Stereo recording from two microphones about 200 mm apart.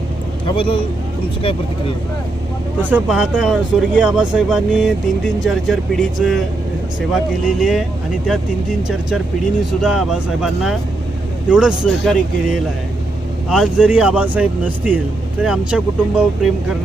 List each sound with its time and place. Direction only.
0.4 s speech: 25° left (ahead or behind)
2.9 s speech: 5° right (ahead or behind)
7.4 s speech: centre (ahead or behind)
9.8 s speech: 5° right (ahead or behind)
13.5 s speech: 5° right (ahead or behind)